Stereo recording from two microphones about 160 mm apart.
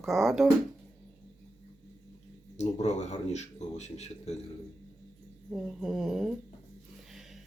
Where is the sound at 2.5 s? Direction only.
45° left (ahead or behind).